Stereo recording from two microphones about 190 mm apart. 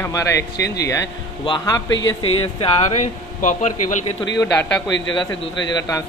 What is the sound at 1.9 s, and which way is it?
Speech, 85° left.